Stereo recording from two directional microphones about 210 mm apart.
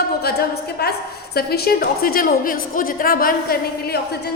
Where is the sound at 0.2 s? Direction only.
50° left (ahead or behind).